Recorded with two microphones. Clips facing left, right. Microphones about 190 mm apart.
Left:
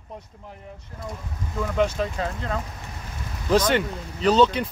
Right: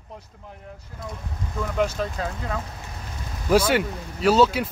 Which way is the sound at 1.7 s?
5° right (ahead or behind).